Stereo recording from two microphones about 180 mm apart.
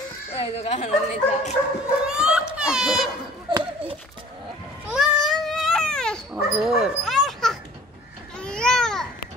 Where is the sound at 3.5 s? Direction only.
25° right (ahead or behind).